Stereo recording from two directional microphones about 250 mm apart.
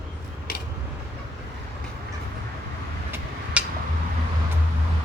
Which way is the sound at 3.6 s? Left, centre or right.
Centre.